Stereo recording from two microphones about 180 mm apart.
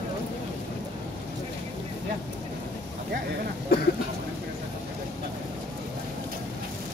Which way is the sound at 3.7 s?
60° left (ahead or behind).